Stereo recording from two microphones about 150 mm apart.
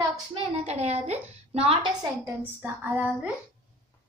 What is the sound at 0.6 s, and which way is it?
A woman's voice, 45° right (ahead or behind).